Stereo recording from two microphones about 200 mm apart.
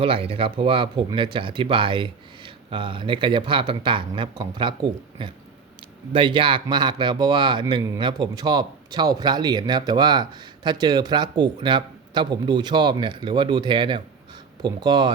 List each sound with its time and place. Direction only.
0.0 s speech: 30° right (ahead or behind)